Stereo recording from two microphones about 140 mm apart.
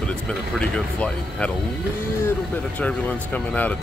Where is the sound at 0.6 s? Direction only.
5° left (ahead or behind).